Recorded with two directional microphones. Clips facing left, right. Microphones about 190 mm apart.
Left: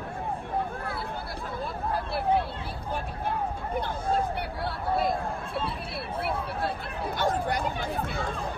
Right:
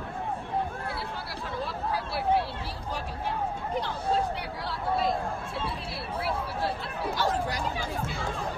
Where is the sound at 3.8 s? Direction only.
55° left (ahead or behind).